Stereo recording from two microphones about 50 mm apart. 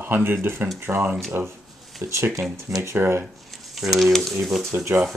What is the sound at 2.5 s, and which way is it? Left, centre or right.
Speech, right.